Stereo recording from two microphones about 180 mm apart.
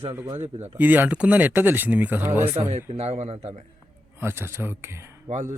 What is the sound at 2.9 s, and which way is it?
Speech, 35° right (ahead or behind).